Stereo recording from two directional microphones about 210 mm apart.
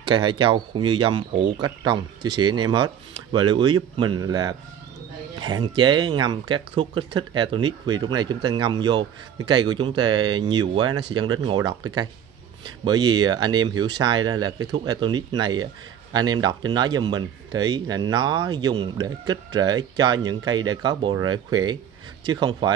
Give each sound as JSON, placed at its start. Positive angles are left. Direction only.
{"t": 0.0, "sound": "speech", "side_deg": -20}